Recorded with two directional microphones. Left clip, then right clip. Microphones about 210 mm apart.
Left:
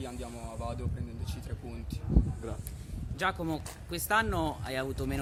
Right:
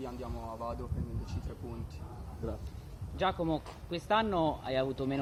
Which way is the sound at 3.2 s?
20° right (ahead or behind).